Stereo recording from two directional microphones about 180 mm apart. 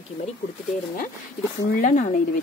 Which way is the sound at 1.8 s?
45° left (ahead or behind).